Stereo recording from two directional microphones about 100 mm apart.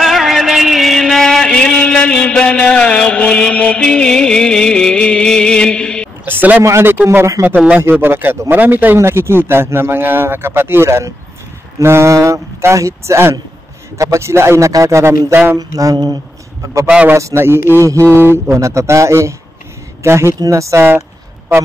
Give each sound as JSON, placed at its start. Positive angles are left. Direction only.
{"t": 0.0, "sound": "music", "side_deg": 0}
{"t": 6.2, "sound": "a sound", "side_deg": -20}
{"t": 6.6, "sound": "a man's voice", "side_deg": -25}
{"t": 15.5, "sound": "mantra", "side_deg": -35}
{"t": 16.8, "sound": "a man's voice", "side_deg": -15}
{"t": 17.2, "sound": "a man's voice", "side_deg": -25}
{"t": 20.3, "sound": "mantra", "side_deg": -35}